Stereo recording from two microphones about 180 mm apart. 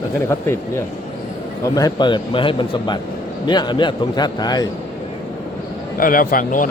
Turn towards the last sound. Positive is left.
turn(degrees=50)  # may be behind; listen again after turning